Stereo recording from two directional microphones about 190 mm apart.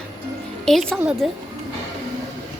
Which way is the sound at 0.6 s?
Centre (ahead or behind).